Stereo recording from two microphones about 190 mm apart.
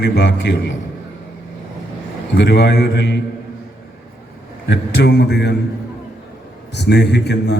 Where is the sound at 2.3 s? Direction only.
60° left (ahead or behind).